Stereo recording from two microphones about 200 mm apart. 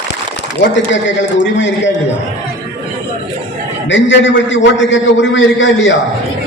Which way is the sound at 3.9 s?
65° left (ahead or behind).